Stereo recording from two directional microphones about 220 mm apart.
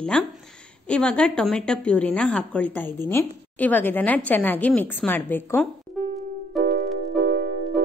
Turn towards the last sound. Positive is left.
turn(degrees=-45)  # may be behind; listen again after turning